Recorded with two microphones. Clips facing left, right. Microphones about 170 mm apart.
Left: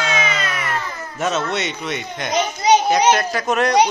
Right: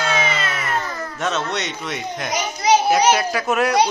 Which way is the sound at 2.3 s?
20° left (ahead or behind).